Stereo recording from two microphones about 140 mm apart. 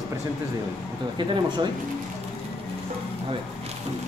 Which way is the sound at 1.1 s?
35° right (ahead or behind).